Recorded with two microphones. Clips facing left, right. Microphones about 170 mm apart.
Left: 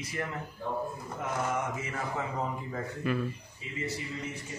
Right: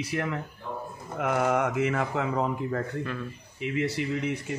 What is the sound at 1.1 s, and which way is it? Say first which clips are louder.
Speech: right 8 dB; 70° right (ahead or behind).